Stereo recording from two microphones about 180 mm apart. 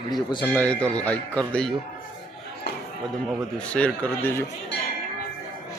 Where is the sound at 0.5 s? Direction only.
5° left (ahead or behind).